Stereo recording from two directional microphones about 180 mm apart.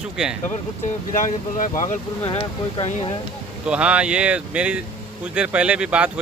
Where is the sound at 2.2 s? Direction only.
30° left (ahead or behind).